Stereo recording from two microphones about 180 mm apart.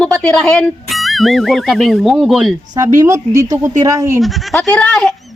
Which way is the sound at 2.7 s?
20° right (ahead or behind).